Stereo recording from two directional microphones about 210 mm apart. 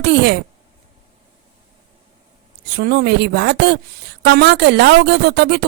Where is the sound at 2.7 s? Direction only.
50° right (ahead or behind).